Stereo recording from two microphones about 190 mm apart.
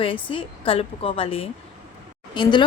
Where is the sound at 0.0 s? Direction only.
30° left (ahead or behind).